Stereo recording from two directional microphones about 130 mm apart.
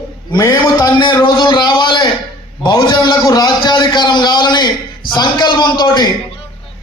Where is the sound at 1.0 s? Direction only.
35° left (ahead or behind).